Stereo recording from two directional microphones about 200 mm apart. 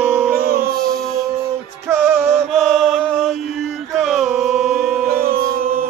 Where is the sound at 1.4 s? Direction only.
10° right (ahead or behind).